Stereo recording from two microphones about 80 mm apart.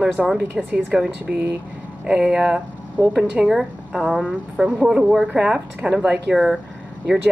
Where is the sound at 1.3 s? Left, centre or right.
Right.